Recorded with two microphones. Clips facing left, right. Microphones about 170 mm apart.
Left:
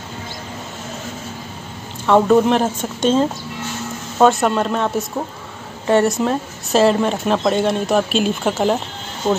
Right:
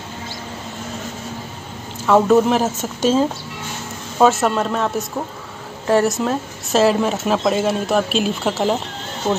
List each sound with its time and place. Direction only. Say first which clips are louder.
2.0 s a woman's voice: left 1 dB; centre (ahead or behind)